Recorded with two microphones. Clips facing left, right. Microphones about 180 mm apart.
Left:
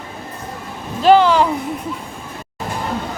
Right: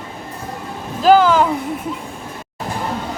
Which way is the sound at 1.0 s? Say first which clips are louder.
Even; 5° right (ahead or behind).